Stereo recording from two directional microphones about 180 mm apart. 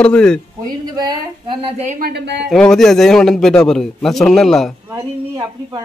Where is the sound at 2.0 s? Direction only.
65° right (ahead or behind).